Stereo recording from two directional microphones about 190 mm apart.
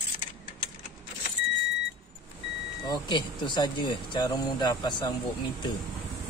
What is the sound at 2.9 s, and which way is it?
Speech, 25° left (ahead or behind).